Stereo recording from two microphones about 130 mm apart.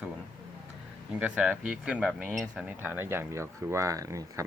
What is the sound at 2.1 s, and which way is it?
Speech, 5° left (ahead or behind).